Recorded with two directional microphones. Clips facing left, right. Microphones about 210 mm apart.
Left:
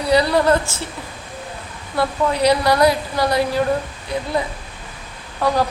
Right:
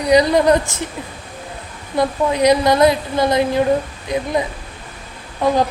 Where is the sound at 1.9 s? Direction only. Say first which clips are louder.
Right 2 dB; 20° right (ahead or behind).